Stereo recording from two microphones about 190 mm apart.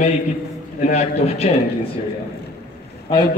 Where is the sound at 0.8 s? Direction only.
35° left (ahead or behind).